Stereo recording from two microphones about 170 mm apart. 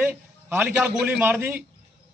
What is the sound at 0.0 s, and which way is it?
A man's voice, 10° right (ahead or behind).